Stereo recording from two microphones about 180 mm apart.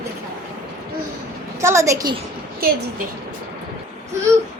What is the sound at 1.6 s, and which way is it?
Speech, 15° right (ahead or behind).